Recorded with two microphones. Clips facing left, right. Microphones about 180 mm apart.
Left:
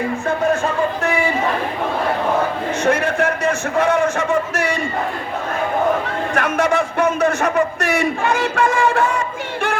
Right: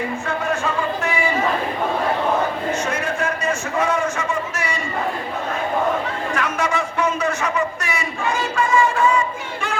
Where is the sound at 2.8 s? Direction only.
65° left (ahead or behind).